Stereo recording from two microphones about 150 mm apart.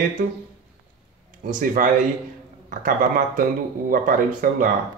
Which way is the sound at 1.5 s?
60° right (ahead or behind).